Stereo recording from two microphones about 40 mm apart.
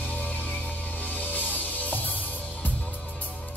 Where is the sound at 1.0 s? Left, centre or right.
Left.